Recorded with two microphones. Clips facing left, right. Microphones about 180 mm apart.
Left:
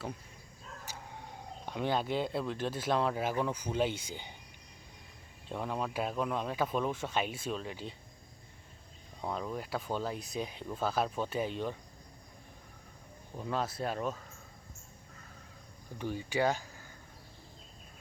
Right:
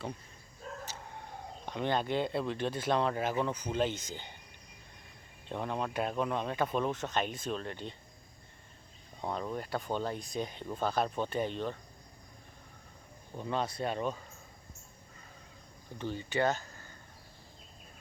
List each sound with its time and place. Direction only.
0.7 s dog: 55° right (ahead or behind)
1.6 s speech: 5° left (ahead or behind)
5.5 s speech: 5° left (ahead or behind)
9.2 s speech: centre (ahead or behind)
13.3 s speech: centre (ahead or behind)
16.0 s speech: 10° left (ahead or behind)